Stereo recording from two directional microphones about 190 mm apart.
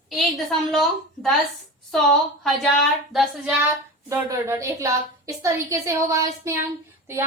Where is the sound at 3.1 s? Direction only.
5° right (ahead or behind).